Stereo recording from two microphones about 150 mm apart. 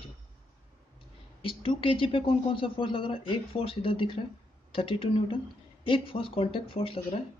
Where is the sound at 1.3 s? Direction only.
40° left (ahead or behind).